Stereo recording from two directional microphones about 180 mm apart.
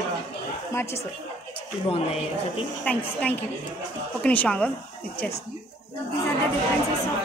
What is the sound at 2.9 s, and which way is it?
Speech, 10° left (ahead or behind).